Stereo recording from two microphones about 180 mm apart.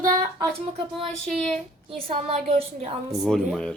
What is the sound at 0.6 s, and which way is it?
Speech, 30° right (ahead or behind).